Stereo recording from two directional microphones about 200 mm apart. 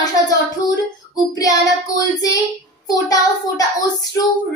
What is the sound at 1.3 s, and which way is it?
Speech, 20° left (ahead or behind).